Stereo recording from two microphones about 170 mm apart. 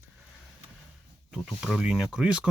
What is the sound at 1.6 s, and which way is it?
Speech, 5° right (ahead or behind).